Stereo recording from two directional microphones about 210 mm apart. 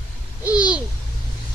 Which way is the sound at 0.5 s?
5° right (ahead or behind).